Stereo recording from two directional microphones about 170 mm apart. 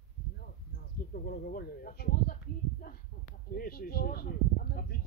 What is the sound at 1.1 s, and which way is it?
Speech, 60° left (ahead or behind).